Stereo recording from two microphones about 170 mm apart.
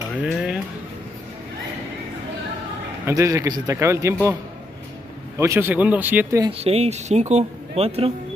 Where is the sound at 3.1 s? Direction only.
20° right (ahead or behind).